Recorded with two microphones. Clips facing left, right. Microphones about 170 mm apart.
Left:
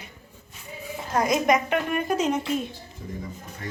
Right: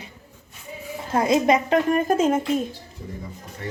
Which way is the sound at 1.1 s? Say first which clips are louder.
Right 3 dB; 25° right (ahead or behind).